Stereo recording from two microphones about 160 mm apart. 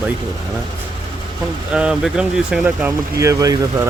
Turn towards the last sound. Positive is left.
turn(degrees=-20)  # may be behind; listen again after turning